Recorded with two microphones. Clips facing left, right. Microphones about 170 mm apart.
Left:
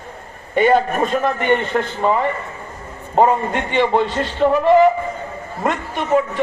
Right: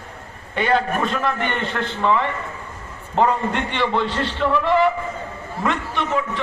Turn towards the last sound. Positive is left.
turn(degrees=45)  # may be behind; listen again after turning